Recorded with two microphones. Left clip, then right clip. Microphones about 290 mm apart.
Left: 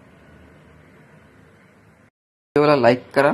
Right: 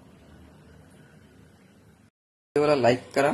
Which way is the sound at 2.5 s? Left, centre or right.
Centre.